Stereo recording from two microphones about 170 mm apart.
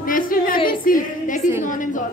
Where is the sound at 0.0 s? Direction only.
55° left (ahead or behind).